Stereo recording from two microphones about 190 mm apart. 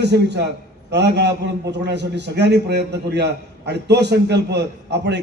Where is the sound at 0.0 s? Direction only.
65° right (ahead or behind).